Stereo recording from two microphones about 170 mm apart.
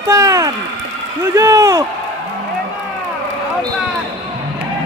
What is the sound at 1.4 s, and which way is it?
Speech, 20° right (ahead or behind).